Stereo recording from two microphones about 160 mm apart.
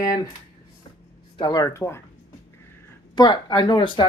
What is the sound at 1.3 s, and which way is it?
Speech, 25° left (ahead or behind).